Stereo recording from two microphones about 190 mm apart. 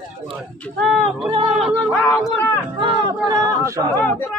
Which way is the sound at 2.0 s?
10° left (ahead or behind).